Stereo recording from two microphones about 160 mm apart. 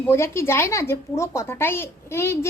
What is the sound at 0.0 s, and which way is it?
A woman's voice, 15° left (ahead or behind).